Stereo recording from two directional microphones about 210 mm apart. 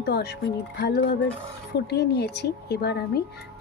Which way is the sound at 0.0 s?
50° left (ahead or behind).